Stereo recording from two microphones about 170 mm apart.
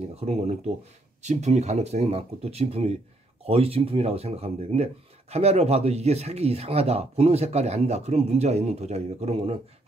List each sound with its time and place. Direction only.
0.1 s speech: 40° right (ahead or behind)